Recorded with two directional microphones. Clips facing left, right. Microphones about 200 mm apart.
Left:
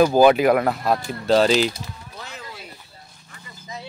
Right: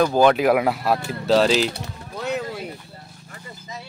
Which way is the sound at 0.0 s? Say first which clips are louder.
Left 2 dB; 5° left (ahead or behind).